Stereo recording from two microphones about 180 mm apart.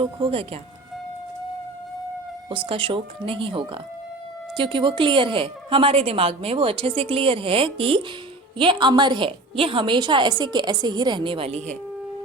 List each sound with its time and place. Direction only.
0.0 s a woman's voice: 30° right (ahead or behind)
2.5 s a woman's voice: 30° right (ahead or behind)